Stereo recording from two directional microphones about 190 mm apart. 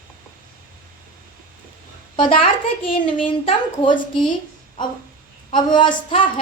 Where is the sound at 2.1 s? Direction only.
25° left (ahead or behind).